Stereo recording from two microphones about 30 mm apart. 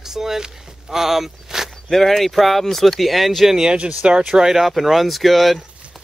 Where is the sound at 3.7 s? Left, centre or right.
Right.